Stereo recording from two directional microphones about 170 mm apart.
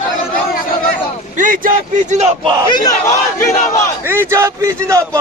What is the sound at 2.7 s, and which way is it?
Battle cry, 20° left (ahead or behind).